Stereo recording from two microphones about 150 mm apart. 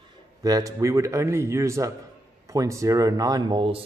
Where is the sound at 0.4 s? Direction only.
25° right (ahead or behind).